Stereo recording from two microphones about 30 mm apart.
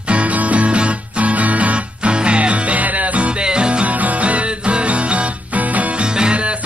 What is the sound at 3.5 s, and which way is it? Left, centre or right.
Music, right.